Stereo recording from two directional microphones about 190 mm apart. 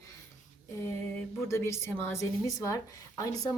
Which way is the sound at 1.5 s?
15° left (ahead or behind).